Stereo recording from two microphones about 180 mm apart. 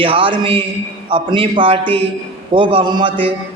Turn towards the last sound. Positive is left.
turn(degrees=-25)  # may be behind; listen again after turning